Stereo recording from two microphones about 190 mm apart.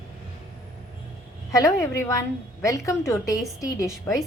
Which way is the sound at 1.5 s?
15° left (ahead or behind).